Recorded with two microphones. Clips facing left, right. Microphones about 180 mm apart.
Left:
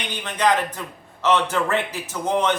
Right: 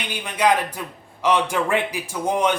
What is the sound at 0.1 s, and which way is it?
A man's voice, 10° right (ahead or behind).